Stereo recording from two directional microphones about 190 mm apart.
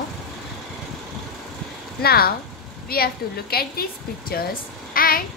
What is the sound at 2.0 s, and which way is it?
A woman's voice, 55° left (ahead or behind).